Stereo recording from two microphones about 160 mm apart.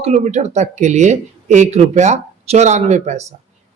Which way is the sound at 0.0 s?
45° right (ahead or behind).